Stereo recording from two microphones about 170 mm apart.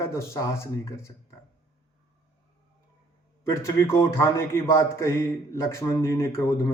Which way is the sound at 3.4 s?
15° left (ahead or behind).